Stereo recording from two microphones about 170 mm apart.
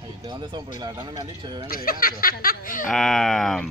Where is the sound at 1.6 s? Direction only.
60° left (ahead or behind).